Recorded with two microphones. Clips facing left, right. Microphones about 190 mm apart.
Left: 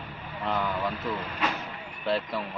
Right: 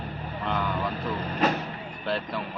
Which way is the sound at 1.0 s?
35° right (ahead or behind).